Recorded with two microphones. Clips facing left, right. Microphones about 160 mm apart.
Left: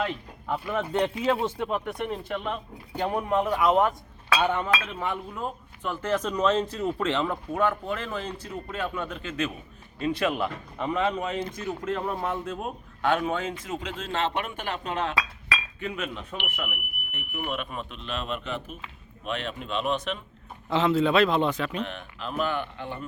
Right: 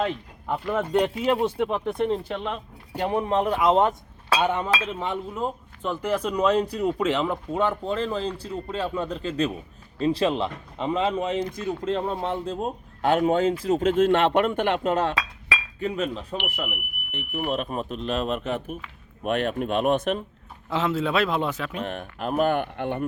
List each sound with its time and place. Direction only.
0.0 s speech: 15° right (ahead or behind)
1.7 s speech: 30° right (ahead or behind); by 14.9 s 60° right (ahead or behind)
15.8 s speech: 35° right (ahead or behind)
20.7 s a man's voice: centre (ahead or behind)
21.8 s speech: 50° right (ahead or behind)